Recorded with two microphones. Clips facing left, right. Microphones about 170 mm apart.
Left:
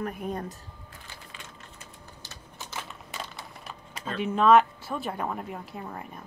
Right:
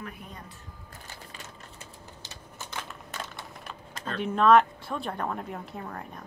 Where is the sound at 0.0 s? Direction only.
50° left (ahead or behind).